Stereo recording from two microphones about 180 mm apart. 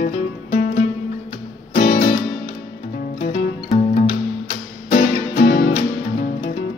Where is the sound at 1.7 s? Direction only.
35° left (ahead or behind).